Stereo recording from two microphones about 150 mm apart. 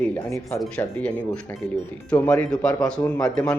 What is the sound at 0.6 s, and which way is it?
A man's voice, 5° left (ahead or behind).